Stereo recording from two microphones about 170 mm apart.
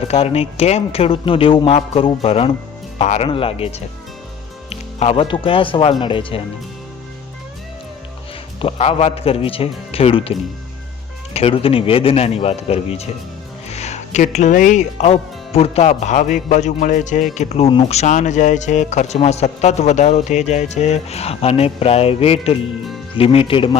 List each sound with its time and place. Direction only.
0.1 s speech: 35° left (ahead or behind)
8.6 s speech: 35° left (ahead or behind)
11.3 s speech: 35° left (ahead or behind)